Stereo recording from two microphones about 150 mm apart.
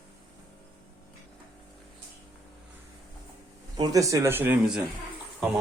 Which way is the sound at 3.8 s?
25° right (ahead or behind).